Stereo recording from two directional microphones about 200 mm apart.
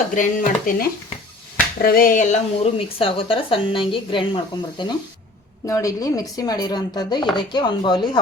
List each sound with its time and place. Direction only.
0.1 s speech: 40° left (ahead or behind); by 8.2 s 20° left (ahead or behind)